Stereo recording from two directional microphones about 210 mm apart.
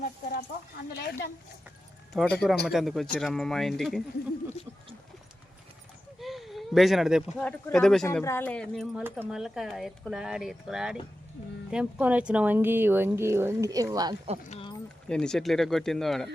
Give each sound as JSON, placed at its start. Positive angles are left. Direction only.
{"t": 0.9, "sound": "speech", "side_deg": 50}
{"t": 2.1, "sound": "speech", "side_deg": 5}
{"t": 6.1, "sound": "speech", "side_deg": 0}
{"t": 8.0, "sound": "speech", "side_deg": 10}
{"t": 14.5, "sound": "clip-clop", "side_deg": 25}
{"t": 15.1, "sound": "speech", "side_deg": 5}